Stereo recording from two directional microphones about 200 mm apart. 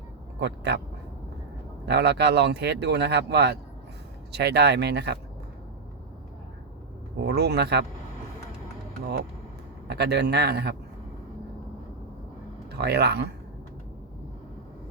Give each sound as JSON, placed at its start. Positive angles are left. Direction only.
{"t": 0.3, "sound": "speech", "side_deg": -55}
{"t": 1.9, "sound": "speech", "side_deg": -55}
{"t": 7.3, "sound": "speech", "side_deg": -55}
{"t": 9.8, "sound": "speech", "side_deg": -55}
{"t": 12.8, "sound": "speech", "side_deg": -55}